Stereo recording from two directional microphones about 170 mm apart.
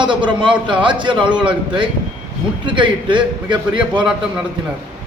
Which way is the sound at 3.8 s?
5° right (ahead or behind).